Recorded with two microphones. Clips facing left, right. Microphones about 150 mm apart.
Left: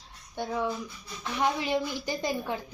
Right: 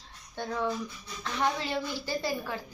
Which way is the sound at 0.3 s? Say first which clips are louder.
Left 1 dB; 10° left (ahead or behind).